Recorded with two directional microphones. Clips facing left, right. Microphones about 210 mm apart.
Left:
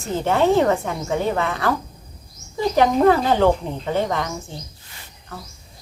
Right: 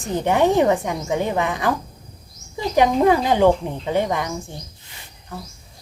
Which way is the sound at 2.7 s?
15° right (ahead or behind).